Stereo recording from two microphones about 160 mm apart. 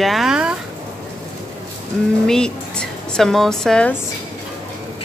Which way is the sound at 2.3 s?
5° left (ahead or behind).